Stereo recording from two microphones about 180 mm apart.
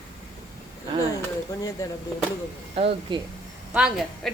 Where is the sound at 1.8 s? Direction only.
20° left (ahead or behind).